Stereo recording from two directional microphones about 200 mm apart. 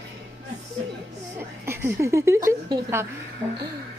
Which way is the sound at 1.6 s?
15° right (ahead or behind).